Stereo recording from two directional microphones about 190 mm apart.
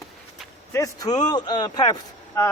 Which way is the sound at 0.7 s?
20° left (ahead or behind).